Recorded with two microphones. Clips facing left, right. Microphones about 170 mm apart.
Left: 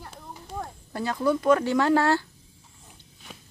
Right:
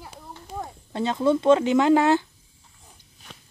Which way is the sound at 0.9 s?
20° right (ahead or behind).